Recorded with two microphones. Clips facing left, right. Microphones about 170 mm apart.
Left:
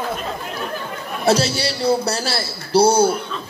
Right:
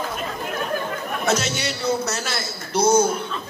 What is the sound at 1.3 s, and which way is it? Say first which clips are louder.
A man's voice: left 6 dB; 35° left (ahead or behind).